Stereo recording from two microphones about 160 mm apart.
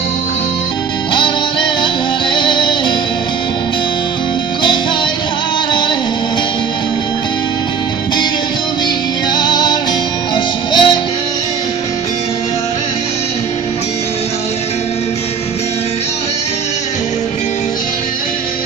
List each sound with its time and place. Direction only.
1.1 s music: 30° left (ahead or behind)
9.3 s music: 25° left (ahead or behind)